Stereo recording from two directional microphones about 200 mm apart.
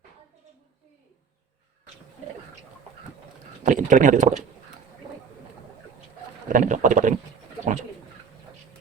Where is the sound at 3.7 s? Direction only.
40° right (ahead or behind).